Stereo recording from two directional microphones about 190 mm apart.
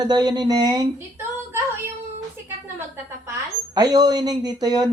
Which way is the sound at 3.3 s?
20° right (ahead or behind).